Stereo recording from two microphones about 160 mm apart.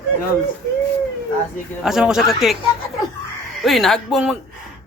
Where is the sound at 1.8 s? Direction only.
5° right (ahead or behind).